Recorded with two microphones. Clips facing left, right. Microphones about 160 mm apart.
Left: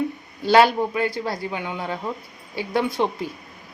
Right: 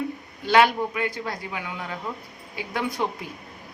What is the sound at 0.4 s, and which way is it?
A man's voice, 35° left (ahead or behind).